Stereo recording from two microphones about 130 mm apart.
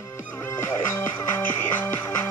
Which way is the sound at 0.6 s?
25° left (ahead or behind).